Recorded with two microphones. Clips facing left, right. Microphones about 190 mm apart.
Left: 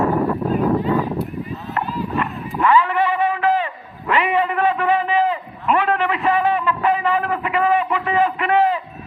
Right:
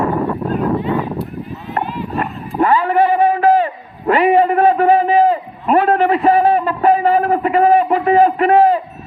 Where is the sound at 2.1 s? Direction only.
40° right (ahead or behind).